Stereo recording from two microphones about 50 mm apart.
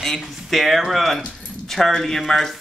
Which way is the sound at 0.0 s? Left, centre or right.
Centre.